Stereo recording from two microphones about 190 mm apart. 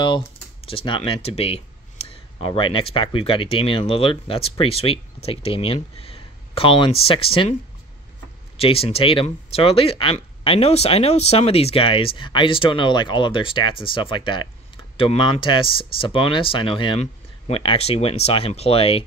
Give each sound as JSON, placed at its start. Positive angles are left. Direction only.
{"t": 0.0, "sound": "speech", "side_deg": 25}
{"t": 8.5, "sound": "speech", "side_deg": 30}